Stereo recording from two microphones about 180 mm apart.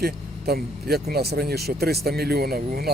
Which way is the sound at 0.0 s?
60° right (ahead or behind).